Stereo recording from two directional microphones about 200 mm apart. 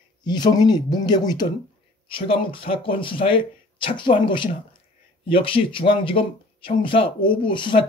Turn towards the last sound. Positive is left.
turn(degrees=25)  # may be behind; listen again after turning